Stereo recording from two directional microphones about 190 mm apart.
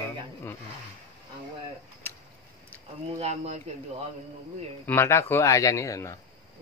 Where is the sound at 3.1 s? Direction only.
35° right (ahead or behind).